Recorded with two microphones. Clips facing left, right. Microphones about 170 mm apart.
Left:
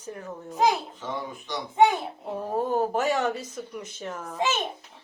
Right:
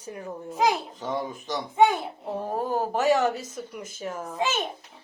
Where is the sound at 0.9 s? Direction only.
40° right (ahead or behind).